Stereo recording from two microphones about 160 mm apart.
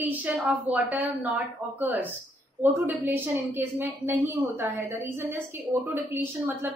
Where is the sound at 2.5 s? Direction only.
10° right (ahead or behind).